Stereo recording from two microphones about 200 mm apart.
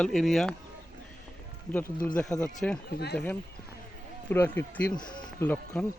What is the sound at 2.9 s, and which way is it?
Speech, 55° left (ahead or behind).